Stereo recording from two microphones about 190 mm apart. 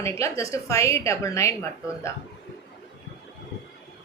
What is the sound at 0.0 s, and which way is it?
A woman's voice, 15° left (ahead or behind).